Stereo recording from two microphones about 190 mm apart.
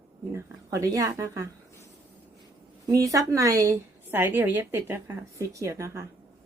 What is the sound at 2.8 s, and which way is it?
A woman's voice, 20° right (ahead or behind).